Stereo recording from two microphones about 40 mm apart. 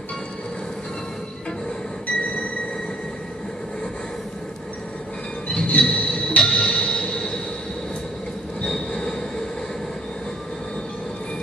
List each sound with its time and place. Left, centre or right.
5.7 s train: left
8.6 s train: centre